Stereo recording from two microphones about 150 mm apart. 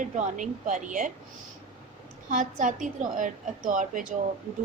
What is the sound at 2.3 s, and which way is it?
A woman's voice, 55° right (ahead or behind).